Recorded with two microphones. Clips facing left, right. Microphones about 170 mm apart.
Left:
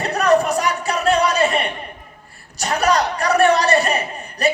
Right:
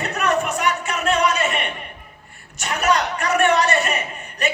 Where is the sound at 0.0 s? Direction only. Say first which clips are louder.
Left 5 dB; 35° left (ahead or behind).